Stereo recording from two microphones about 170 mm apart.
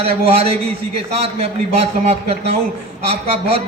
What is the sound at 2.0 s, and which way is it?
A man's voice, 40° right (ahead or behind).